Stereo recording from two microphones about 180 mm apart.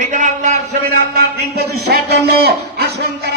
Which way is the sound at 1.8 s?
65° right (ahead or behind).